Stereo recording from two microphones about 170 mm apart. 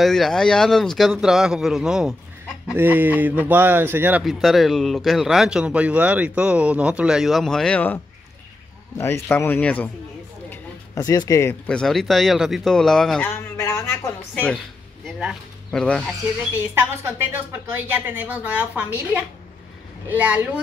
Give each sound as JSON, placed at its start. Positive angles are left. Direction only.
{"t": 0.0, "sound": "a woman's voice", "side_deg": 0}
{"t": 4.2, "sound": "a man's voice", "side_deg": 0}
{"t": 10.5, "sound": "a sound", "side_deg": 20}
{"t": 11.7, "sound": "speech", "side_deg": 5}
{"t": 13.3, "sound": "speech", "side_deg": 15}
{"t": 15.0, "sound": "speech", "side_deg": 0}
{"t": 16.7, "sound": "a woman's voice", "side_deg": -15}